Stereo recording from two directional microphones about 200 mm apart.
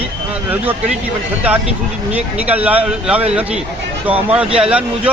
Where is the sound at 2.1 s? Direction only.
5° right (ahead or behind).